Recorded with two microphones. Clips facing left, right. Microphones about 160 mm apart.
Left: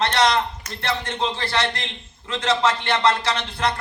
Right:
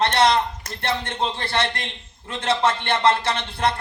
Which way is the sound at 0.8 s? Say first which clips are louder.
Even; 55° right (ahead or behind).